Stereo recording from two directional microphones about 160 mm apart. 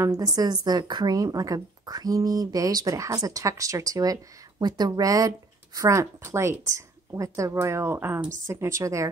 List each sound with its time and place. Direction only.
0.0 s a woman's voice: 20° right (ahead or behind)